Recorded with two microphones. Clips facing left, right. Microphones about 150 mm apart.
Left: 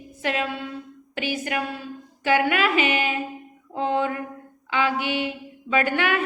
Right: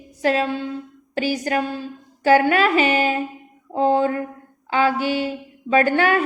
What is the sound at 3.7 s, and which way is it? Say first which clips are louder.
Mantra: right 6 dB; 35° right (ahead or behind).